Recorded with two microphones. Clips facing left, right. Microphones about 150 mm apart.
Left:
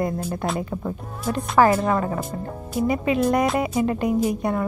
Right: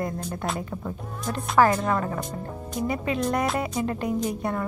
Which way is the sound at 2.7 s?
15° left (ahead or behind).